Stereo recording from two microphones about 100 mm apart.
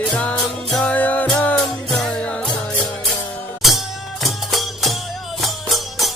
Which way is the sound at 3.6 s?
Centre (ahead or behind).